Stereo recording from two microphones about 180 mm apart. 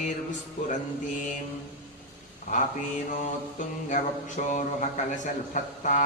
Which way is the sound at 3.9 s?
45° left (ahead or behind).